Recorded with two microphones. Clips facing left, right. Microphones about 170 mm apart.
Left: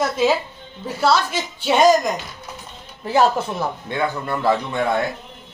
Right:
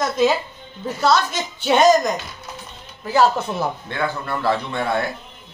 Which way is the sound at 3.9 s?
20° left (ahead or behind).